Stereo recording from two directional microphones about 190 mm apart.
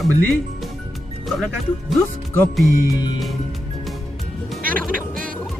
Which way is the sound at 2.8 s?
20° left (ahead or behind).